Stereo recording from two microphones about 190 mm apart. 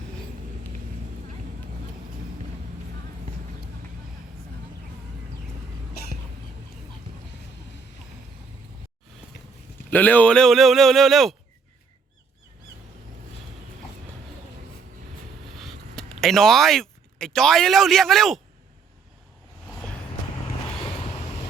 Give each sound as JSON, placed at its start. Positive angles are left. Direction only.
{"t": 9.9, "sound": "speech", "side_deg": 10}
{"t": 15.5, "sound": "a sound", "side_deg": 0}
{"t": 16.2, "sound": "speech", "side_deg": 0}
{"t": 20.7, "sound": "vehicle", "side_deg": 30}